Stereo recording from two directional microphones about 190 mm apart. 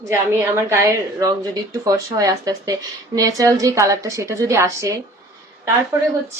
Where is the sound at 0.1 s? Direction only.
10° right (ahead or behind).